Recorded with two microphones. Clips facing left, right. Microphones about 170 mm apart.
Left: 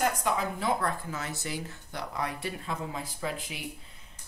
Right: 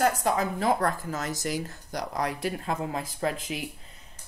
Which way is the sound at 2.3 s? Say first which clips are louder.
Right 5 dB; 90° right.